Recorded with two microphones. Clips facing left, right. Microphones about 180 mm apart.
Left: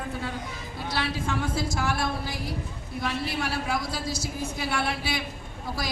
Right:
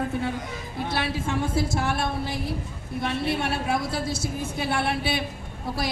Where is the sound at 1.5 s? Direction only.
25° right (ahead or behind).